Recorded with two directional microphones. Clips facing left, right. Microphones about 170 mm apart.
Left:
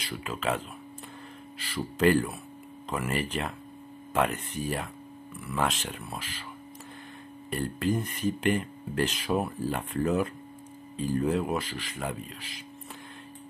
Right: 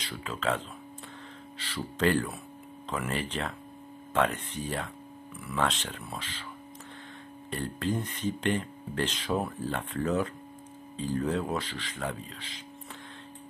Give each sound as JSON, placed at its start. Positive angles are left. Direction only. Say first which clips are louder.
{"t": 0.0, "sound": "speech", "louder": "left 1 dB", "side_deg": 10}
{"t": 7.5, "sound": "speech", "louder": "left 3 dB", "side_deg": 10}